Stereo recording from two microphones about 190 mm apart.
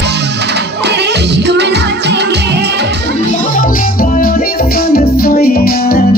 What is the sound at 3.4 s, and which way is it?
Music, 45° left (ahead or behind).